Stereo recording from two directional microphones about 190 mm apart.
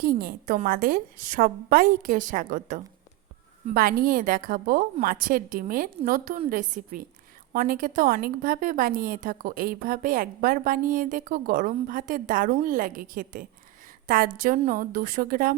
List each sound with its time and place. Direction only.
0.0 s a woman's voice: 50° right (ahead or behind)